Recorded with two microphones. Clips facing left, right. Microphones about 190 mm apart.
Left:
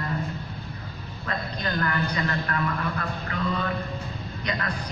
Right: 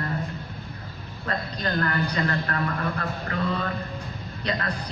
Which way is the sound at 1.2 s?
40° right (ahead or behind).